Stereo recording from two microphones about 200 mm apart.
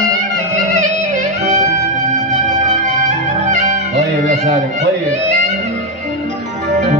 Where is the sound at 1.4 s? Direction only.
35° right (ahead or behind).